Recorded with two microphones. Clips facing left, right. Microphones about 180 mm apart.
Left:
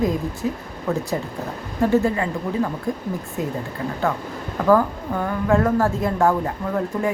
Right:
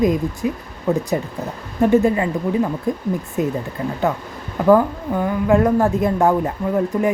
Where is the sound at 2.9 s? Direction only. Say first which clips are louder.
Right 4 dB; 20° right (ahead or behind).